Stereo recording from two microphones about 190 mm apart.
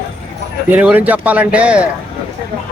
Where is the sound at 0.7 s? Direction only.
10° right (ahead or behind).